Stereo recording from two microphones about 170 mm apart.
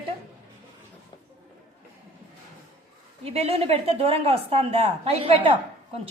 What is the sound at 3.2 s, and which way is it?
A woman's voice, 35° right (ahead or behind).